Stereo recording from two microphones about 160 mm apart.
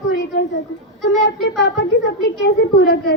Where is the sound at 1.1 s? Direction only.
90° left.